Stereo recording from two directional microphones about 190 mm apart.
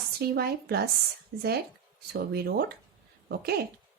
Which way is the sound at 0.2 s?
55° right (ahead or behind).